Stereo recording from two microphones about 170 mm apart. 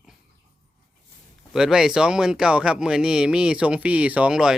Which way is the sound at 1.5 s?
5° right (ahead or behind).